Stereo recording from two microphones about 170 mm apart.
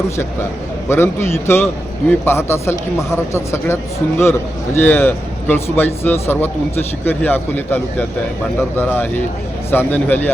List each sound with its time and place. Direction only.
0.9 s speech: 15° left (ahead or behind)